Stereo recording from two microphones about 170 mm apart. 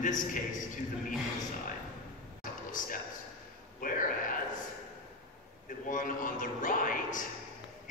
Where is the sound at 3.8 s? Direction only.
55° left (ahead or behind).